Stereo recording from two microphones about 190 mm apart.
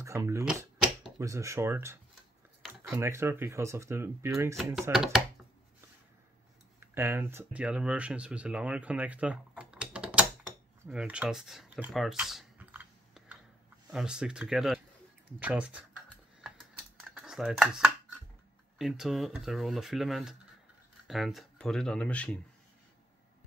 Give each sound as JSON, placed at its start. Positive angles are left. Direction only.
{"t": 0.0, "sound": "speech", "side_deg": -15}
{"t": 4.9, "sound": "speech", "side_deg": 0}
{"t": 6.8, "sound": "speech", "side_deg": -10}
{"t": 10.9, "sound": "a sound", "side_deg": -5}
{"t": 13.8, "sound": "speech", "side_deg": -5}
{"t": 16.3, "sound": "computer keyboard", "side_deg": 0}
{"t": 18.8, "sound": "speech", "side_deg": 0}